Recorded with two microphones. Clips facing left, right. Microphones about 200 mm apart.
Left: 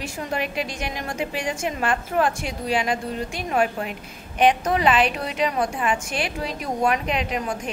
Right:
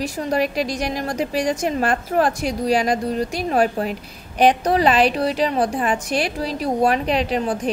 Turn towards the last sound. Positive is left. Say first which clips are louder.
# right 6 dB
turn(degrees=-35)  # may be behind; listen again after turning